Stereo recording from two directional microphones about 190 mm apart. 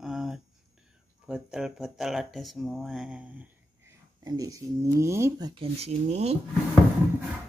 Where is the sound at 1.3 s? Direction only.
5° right (ahead or behind).